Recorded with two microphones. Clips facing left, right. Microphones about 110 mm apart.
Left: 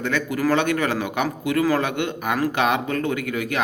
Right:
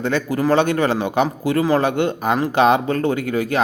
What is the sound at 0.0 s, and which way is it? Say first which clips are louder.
A man's voice: right 3 dB; 30° right (ahead or behind).